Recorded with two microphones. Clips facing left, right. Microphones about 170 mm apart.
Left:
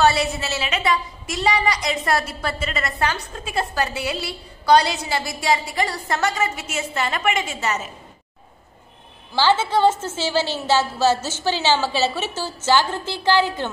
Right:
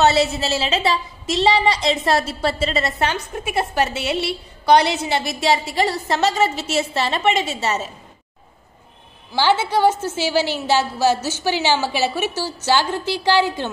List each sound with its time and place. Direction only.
0.0 s a woman's voice: 25° right (ahead or behind)
9.3 s a woman's voice: 15° right (ahead or behind)